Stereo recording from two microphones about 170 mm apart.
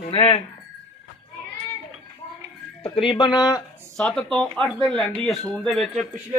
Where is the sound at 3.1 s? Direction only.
25° left (ahead or behind).